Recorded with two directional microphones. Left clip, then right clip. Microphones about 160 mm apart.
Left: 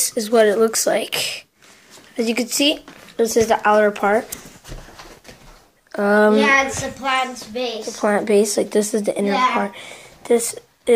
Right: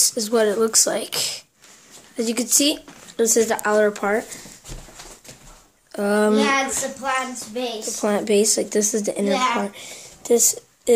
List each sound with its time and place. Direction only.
0.0 s speech: 5° right (ahead or behind)
5.9 s speech: centre (ahead or behind)
6.4 s a sound: 25° left (ahead or behind)
8.0 s speech: 5° right (ahead or behind)
10.3 s speech: 15° left (ahead or behind)